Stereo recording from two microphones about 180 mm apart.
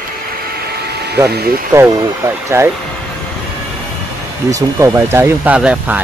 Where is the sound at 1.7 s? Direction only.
15° right (ahead or behind).